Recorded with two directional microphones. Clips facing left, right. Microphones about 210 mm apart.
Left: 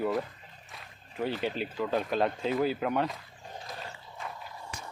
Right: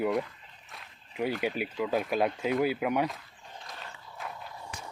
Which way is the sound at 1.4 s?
10° right (ahead or behind).